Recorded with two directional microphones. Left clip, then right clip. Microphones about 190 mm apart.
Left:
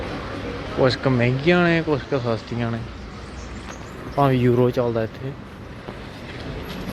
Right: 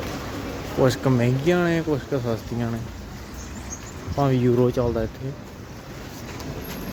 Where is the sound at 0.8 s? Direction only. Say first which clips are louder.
Left 2 dB; 25° right (ahead or behind).